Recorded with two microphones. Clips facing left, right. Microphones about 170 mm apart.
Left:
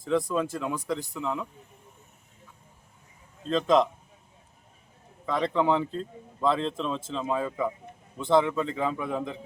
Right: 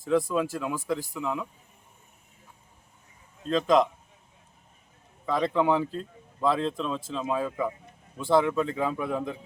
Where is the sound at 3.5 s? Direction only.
Centre (ahead or behind).